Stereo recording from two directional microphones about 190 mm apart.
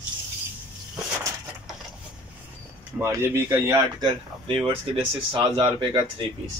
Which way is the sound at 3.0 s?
15° right (ahead or behind).